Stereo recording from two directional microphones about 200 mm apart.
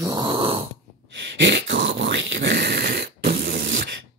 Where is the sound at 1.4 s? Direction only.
65° right (ahead or behind).